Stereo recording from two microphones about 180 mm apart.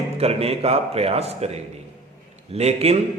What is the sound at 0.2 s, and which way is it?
Speech, 35° right (ahead or behind).